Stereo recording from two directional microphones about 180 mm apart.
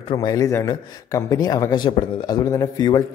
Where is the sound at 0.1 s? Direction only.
20° left (ahead or behind).